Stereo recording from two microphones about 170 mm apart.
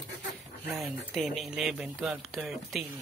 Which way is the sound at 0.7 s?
Centre (ahead or behind).